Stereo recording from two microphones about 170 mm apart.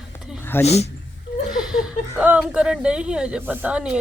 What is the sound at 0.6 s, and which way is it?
Speech, 40° left (ahead or behind).